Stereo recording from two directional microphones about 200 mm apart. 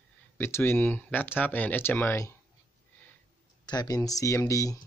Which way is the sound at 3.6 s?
20° left (ahead or behind).